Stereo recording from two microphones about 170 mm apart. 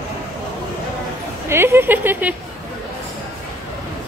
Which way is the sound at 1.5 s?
15° right (ahead or behind).